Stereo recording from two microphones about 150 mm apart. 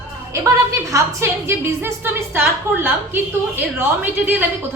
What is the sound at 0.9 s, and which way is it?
A woman's voice, 15° right (ahead or behind).